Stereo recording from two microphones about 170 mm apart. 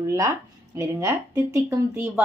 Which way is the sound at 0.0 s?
20° right (ahead or behind).